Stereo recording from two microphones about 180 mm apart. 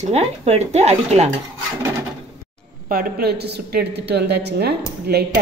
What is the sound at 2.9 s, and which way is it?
A woman's voice, 55° right (ahead or behind).